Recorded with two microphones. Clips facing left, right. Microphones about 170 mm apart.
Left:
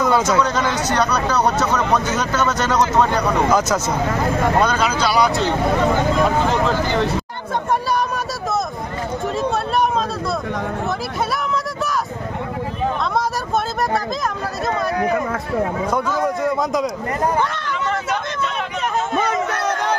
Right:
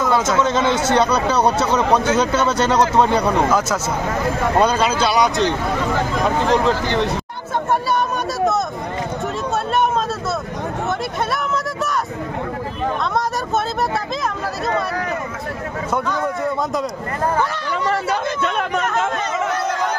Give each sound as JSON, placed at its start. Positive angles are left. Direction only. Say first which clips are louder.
{"t": 0.0, "sound": "speech", "louder": "left 1 dB", "side_deg": 0}
{"t": 0.4, "sound": "speech", "louder": "right 2 dB", "side_deg": -25}
{"t": 3.5, "sound": "speech", "louder": "left 1 dB", "side_deg": -5}
{"t": 4.6, "sound": "speech", "louder": "right 2 dB", "side_deg": -30}
{"t": 19.5, "sound": "crowd", "louder": "right 1 dB", "side_deg": 60}